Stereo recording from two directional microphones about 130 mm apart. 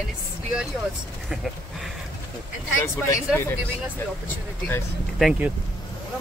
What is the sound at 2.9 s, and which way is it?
Speech, 20° left (ahead or behind).